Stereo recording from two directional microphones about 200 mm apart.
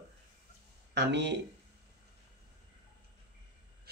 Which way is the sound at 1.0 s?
60° right (ahead or behind).